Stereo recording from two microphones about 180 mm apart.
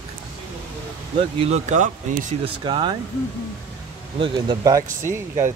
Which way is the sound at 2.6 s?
25° right (ahead or behind).